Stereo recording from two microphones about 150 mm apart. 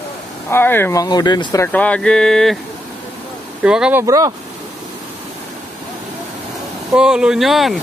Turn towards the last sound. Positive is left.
turn(degrees=0)  # may be behind; listen again after turning